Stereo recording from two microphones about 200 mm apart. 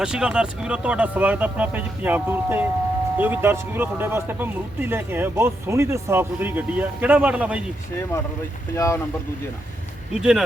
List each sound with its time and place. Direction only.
0.0 s speech: 5° right (ahead or behind)
8.7 s speech: 15° left (ahead or behind)
10.2 s speech: 5° right (ahead or behind)